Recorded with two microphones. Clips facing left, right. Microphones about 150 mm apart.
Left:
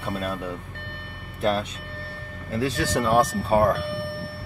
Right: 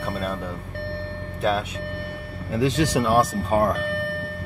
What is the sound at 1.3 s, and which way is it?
Speech, centre (ahead or behind).